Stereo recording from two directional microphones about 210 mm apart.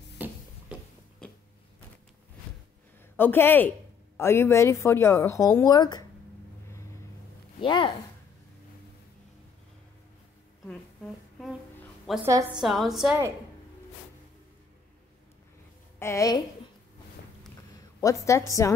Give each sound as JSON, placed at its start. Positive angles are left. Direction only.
{"t": 0.2, "sound": "tick-tock", "side_deg": -10}
{"t": 0.7, "sound": "a sound", "side_deg": -5}
{"t": 3.2, "sound": "a woman's voice", "side_deg": 10}
{"t": 7.6, "sound": "speech", "side_deg": 20}
{"t": 12.3, "sound": "a woman's voice", "side_deg": -15}
{"t": 12.5, "sound": "a woman's voice", "side_deg": 0}
{"t": 16.0, "sound": "a woman's voice", "side_deg": 15}
{"t": 18.0, "sound": "a woman's voice", "side_deg": 15}